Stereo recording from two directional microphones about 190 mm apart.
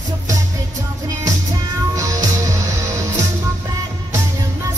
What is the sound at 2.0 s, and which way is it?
Music, 15° right (ahead or behind).